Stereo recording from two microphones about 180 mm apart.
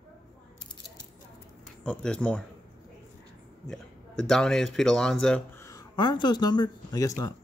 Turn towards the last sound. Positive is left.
turn(degrees=20)  # may be behind; listen again after turning